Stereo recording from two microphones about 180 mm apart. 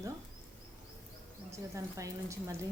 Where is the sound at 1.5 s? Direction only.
15° right (ahead or behind).